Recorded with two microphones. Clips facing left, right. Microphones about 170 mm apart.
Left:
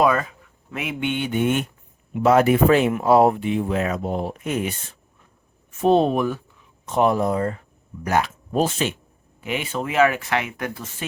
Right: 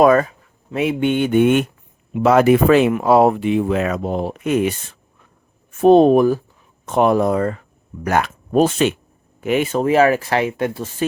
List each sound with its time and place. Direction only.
0.0 s speech: 45° right (ahead or behind)
0.7 s speech: 30° right (ahead or behind); by 1.6 s 65° right (ahead or behind)
2.1 s speech: 90° right
5.8 s speech: 50° right (ahead or behind)
6.8 s speech: 60° right (ahead or behind); by 7.5 s 85° right
8.0 s speech: 60° right (ahead or behind)
9.4 s speech: 45° right (ahead or behind); by 10.8 s 30° right (ahead or behind)